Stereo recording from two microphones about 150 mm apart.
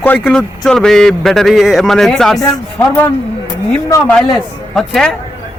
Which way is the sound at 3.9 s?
20° left (ahead or behind).